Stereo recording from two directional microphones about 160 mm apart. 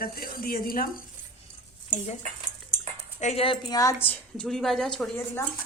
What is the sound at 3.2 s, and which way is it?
Speech, 40° left (ahead or behind).